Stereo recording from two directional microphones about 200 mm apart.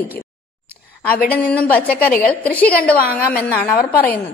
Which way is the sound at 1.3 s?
5° left (ahead or behind).